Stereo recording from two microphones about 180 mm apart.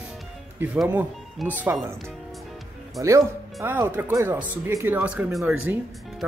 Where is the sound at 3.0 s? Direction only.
15° right (ahead or behind).